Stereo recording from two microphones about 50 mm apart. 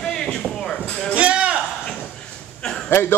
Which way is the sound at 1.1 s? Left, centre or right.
Right.